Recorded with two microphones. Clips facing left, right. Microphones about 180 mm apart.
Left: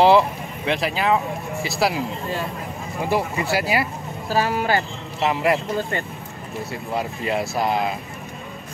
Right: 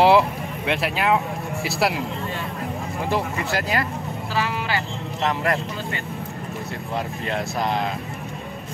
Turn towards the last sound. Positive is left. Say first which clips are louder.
# left 2 dB
turn(degrees=5)  # may be behind; listen again after turning